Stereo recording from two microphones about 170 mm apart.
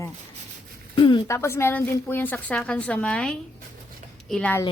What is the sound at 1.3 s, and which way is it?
A woman's voice, 15° left (ahead or behind).